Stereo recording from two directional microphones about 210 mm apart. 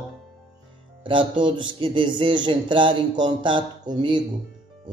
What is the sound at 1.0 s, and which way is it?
Speech, 25° right (ahead or behind).